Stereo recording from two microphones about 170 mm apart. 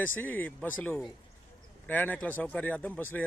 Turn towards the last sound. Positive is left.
turn(degrees=10)  # may be behind; listen again after turning